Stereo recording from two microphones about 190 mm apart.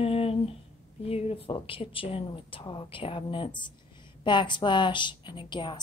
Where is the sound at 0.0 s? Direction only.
30° left (ahead or behind).